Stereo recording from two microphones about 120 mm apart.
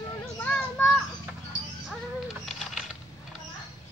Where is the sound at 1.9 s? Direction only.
Centre (ahead or behind).